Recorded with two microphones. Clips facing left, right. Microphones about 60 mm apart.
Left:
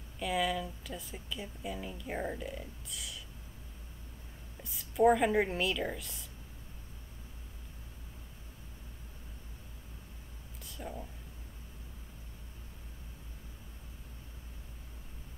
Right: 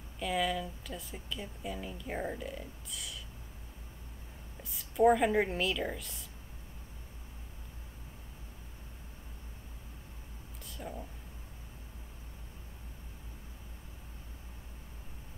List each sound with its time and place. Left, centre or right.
0.2 s speech: centre
4.6 s speech: centre
10.6 s a sound: centre